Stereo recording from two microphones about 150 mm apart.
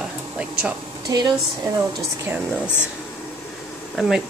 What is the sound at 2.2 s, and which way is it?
Speech, 10° right (ahead or behind).